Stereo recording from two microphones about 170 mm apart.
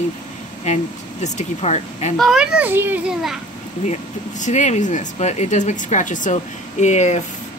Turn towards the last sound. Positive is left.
turn(degrees=40)  # may be behind; listen again after turning